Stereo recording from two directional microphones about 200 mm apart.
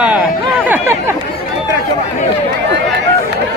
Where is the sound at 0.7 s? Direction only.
15° right (ahead or behind).